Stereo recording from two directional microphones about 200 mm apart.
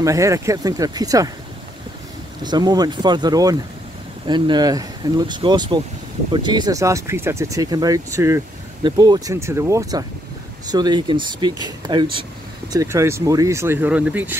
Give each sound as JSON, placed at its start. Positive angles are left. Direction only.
{"t": 0.0, "sound": "speech", "side_deg": -15}
{"t": 2.4, "sound": "speech", "side_deg": -20}